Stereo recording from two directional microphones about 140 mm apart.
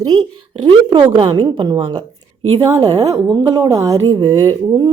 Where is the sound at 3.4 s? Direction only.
25° right (ahead or behind).